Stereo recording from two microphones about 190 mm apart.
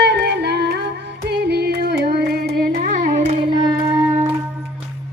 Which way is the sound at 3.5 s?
20° right (ahead or behind).